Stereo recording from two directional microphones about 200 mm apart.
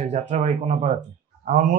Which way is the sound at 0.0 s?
35° right (ahead or behind).